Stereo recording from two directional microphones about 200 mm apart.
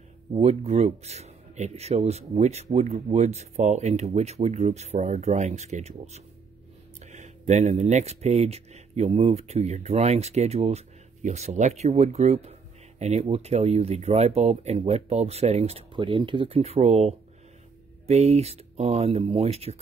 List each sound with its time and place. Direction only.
0.3 s speech: 35° right (ahead or behind)